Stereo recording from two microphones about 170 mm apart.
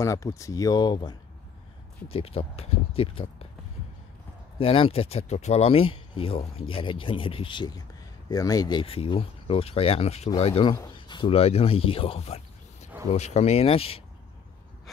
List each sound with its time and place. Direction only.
0.0 s speech: 20° left (ahead or behind); by 3.4 s 35° left (ahead or behind)
4.6 s speech: 30° left (ahead or behind)